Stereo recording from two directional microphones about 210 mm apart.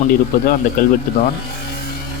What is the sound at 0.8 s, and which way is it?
Speech, 40° left (ahead or behind).